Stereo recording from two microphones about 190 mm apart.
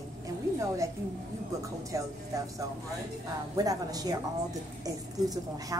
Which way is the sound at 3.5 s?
20° right (ahead or behind).